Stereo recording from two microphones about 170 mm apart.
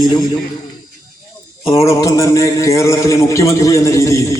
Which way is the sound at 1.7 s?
20° left (ahead or behind).